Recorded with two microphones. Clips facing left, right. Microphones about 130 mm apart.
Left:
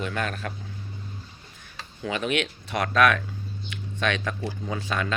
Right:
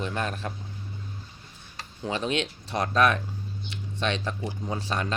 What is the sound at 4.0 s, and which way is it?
Speech, 30° right (ahead or behind).